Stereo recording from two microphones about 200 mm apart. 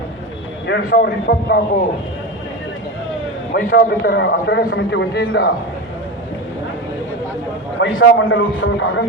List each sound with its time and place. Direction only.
0.7 s a man's voice: 55° left (ahead or behind)
3.5 s a man's voice: 50° left (ahead or behind)
7.8 s a man's voice: 65° left (ahead or behind)